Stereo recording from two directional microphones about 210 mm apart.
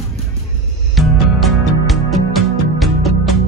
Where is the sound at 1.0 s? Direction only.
Centre (ahead or behind).